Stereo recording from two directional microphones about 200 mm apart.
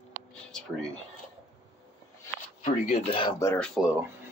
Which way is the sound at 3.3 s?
10° left (ahead or behind).